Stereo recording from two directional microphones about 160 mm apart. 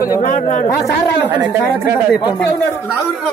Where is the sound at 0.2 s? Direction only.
50° left (ahead or behind).